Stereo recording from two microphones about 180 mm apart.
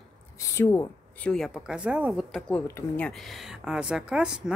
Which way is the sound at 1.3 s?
Centre (ahead or behind).